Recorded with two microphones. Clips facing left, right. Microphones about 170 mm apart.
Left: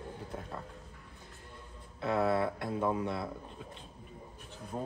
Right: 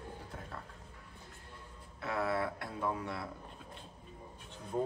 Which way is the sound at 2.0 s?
25° left (ahead or behind).